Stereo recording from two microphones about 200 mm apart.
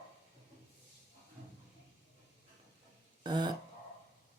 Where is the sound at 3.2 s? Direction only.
20° right (ahead or behind).